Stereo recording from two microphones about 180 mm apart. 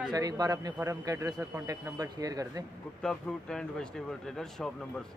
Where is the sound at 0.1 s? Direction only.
20° right (ahead or behind).